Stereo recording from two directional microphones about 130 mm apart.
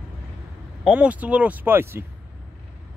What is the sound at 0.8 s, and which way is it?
Speech, 10° right (ahead or behind).